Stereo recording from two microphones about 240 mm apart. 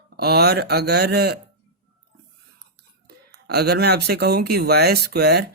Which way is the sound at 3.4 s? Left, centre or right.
Right.